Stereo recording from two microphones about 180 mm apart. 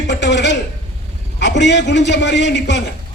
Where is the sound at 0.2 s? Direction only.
75° left (ahead or behind).